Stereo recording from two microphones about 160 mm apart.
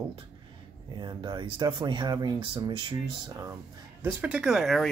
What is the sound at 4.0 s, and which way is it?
Speech, 10° right (ahead or behind).